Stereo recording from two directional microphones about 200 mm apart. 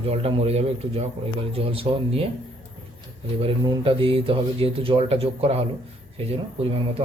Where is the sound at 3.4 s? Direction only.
25° right (ahead or behind).